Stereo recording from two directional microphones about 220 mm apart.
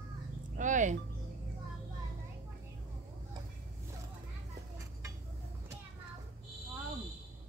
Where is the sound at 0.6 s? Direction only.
35° right (ahead or behind).